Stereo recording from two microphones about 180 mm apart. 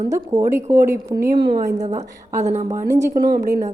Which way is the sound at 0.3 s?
15° right (ahead or behind).